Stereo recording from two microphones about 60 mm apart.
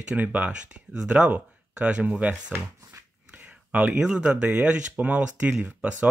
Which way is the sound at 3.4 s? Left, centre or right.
Right.